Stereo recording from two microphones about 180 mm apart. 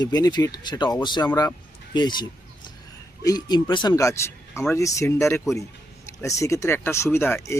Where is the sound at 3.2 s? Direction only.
25° left (ahead or behind).